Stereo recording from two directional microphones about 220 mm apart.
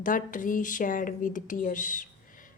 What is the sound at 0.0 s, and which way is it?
A woman's voice, 35° left (ahead or behind).